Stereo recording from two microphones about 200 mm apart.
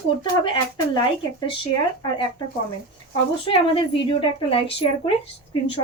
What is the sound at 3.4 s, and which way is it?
A woman's voice, 25° left (ahead or behind).